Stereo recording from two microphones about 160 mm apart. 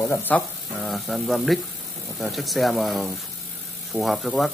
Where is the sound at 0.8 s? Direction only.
Centre (ahead or behind).